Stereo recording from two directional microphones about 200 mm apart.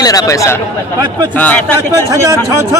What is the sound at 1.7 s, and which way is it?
A man's voice, 15° right (ahead or behind).